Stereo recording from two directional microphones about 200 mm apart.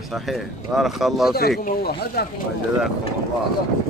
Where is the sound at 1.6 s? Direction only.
50° left (ahead or behind).